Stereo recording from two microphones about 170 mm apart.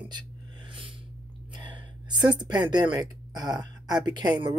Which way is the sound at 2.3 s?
25° right (ahead or behind).